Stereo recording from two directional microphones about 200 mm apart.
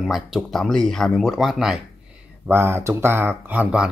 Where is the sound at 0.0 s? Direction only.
Centre (ahead or behind).